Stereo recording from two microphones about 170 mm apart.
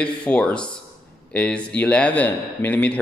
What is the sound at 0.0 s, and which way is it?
Speech, 5° left (ahead or behind).